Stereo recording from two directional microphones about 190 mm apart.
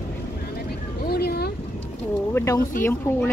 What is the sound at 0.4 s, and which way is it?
Vehicle, 55° left (ahead or behind).